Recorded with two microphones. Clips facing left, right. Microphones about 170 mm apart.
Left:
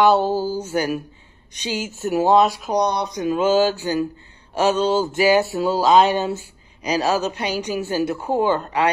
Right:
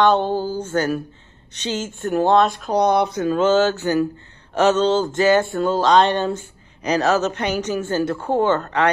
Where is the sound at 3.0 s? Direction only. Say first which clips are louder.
Right 2 dB; 15° left (ahead or behind).